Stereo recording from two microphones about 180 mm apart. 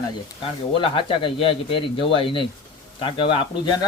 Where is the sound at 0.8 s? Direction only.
30° left (ahead or behind).